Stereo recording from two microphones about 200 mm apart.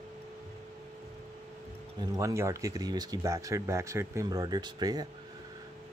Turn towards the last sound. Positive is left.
turn(degrees=-20)  # may be behind; listen again after turning